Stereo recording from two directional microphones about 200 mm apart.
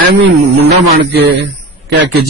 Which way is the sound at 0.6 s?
55° right (ahead or behind).